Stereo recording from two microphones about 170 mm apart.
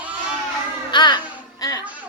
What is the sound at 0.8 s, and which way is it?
Speech, 25° left (ahead or behind).